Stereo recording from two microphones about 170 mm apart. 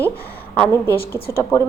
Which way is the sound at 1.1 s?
15° left (ahead or behind).